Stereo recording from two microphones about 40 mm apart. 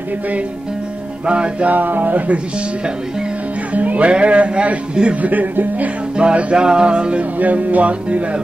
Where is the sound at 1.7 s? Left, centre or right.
Right.